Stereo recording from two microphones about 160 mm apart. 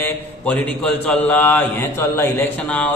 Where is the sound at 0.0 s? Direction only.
10° left (ahead or behind).